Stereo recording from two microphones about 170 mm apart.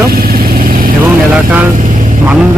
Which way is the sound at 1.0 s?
10° right (ahead or behind).